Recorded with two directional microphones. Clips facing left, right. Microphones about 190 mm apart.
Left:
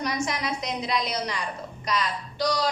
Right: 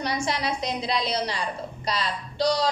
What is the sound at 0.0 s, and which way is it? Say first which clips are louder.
A woman's voice: right 1 dB; 30° right (ahead or behind).